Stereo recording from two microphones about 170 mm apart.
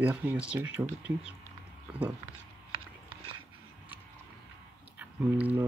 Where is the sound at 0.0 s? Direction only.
10° right (ahead or behind).